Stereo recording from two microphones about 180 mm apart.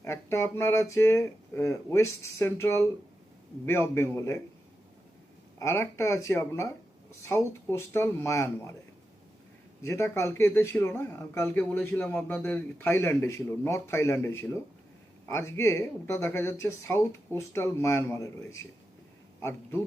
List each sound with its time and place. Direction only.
0.0 s speech: 15° left (ahead or behind)
5.5 s speech: 15° left (ahead or behind)
9.8 s a man's voice: 15° left (ahead or behind)